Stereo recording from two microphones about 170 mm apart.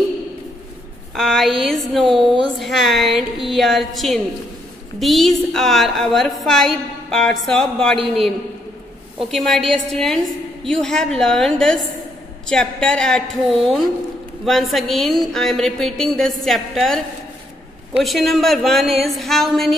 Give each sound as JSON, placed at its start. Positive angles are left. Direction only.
{"t": 1.1, "sound": "a woman's voice", "side_deg": 0}
{"t": 9.3, "sound": "a woman's voice", "side_deg": 0}
{"t": 18.0, "sound": "a woman's voice", "side_deg": 0}